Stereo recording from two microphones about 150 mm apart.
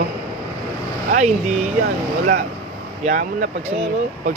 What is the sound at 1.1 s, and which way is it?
Speech, 50° right (ahead or behind).